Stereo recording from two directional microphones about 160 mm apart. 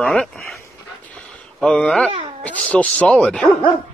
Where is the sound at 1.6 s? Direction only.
5° left (ahead or behind).